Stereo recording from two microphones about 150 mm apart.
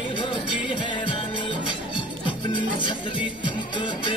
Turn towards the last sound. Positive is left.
turn(degrees=30)  # may be behind; listen again after turning